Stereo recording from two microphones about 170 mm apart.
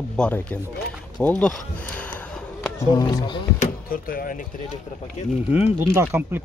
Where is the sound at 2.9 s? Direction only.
25° left (ahead or behind).